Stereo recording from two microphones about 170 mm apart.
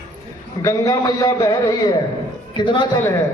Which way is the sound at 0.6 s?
20° left (ahead or behind).